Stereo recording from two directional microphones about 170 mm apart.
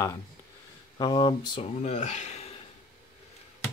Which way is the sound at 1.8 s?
45° left (ahead or behind).